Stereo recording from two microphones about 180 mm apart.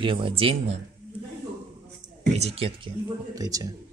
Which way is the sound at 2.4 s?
35° right (ahead or behind).